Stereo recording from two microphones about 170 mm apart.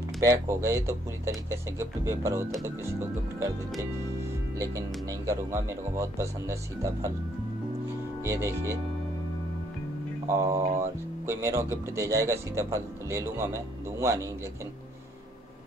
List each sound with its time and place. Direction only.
0.2 s a man's voice: 15° right (ahead or behind)
4.6 s a man's voice: 20° right (ahead or behind)
8.2 s a man's voice: 15° right (ahead or behind)
10.2 s a man's voice: 15° right (ahead or behind)